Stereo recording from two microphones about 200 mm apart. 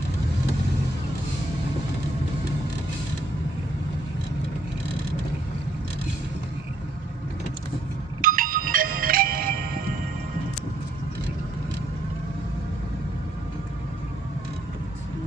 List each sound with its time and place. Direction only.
8.2 s music: 45° right (ahead or behind)